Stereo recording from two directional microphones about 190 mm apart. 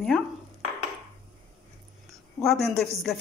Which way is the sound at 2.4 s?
Centre (ahead or behind).